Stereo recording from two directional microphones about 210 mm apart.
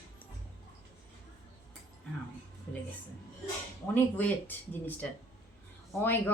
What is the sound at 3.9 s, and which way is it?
A man's voice, 10° left (ahead or behind).